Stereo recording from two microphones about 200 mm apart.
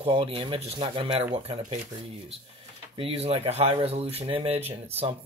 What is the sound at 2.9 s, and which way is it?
Speech, 30° right (ahead or behind).